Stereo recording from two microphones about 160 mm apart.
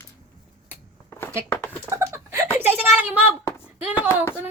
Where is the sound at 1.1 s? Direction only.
15° left (ahead or behind).